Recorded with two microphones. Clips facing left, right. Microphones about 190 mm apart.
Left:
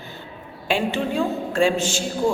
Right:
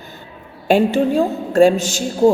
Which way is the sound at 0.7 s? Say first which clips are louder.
Right 8 dB; 40° right (ahead or behind).